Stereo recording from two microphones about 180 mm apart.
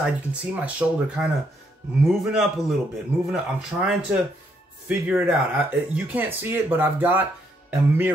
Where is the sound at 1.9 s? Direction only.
5° right (ahead or behind).